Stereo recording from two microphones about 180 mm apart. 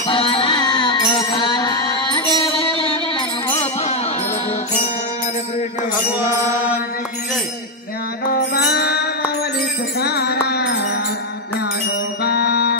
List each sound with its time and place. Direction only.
0.0 s music: 30° left (ahead or behind)
3.8 s music: 35° left (ahead or behind)
6.2 s mantra: 10° right (ahead or behind)
8.3 s music: 60° left (ahead or behind)
12.2 s music: 65° left (ahead or behind)